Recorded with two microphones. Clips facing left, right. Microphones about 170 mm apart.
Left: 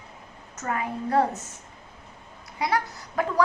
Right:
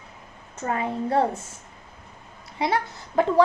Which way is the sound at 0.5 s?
25° right (ahead or behind).